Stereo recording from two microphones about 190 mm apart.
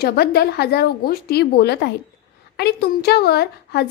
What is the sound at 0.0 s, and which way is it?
A woman's voice, 55° left (ahead or behind).